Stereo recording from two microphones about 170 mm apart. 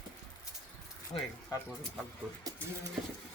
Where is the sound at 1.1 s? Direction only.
30° left (ahead or behind).